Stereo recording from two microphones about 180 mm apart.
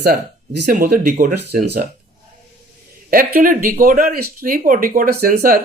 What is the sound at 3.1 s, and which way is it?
Speech, 55° right (ahead or behind).